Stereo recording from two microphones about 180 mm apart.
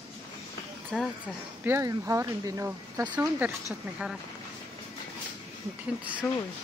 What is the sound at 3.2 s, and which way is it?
Speech, 10° right (ahead or behind).